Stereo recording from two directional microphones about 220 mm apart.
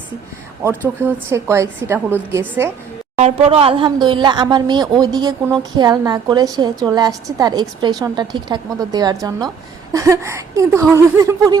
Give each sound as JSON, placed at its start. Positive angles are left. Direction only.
{"t": 0.6, "sound": "a woman's voice", "side_deg": -10}
{"t": 3.2, "sound": "a woman's voice", "side_deg": -30}